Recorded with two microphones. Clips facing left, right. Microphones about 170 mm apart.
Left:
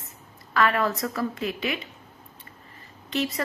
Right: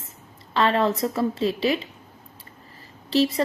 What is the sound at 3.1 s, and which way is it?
Speech, 30° right (ahead or behind).